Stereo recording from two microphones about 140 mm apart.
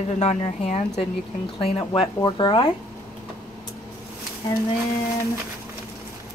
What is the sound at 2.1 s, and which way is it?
Speech, 30° left (ahead or behind).